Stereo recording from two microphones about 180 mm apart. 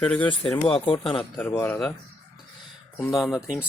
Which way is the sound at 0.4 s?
25° left (ahead or behind).